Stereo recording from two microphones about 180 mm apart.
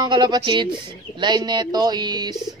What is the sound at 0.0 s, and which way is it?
Speech, 25° right (ahead or behind).